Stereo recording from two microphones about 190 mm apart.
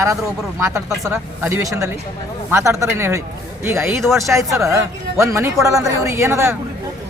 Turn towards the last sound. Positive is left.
turn(degrees=-15)  # may be behind; listen again after turning